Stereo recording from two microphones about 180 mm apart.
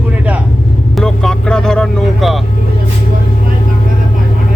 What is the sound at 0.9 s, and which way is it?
Speech, 5° left (ahead or behind).